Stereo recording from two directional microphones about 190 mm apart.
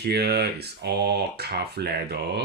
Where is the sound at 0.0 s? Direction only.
60° right (ahead or behind).